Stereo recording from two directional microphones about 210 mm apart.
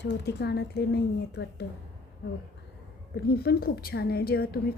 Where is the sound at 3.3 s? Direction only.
50° left (ahead or behind).